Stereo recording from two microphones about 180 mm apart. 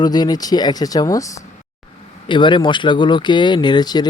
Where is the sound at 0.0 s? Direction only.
20° left (ahead or behind).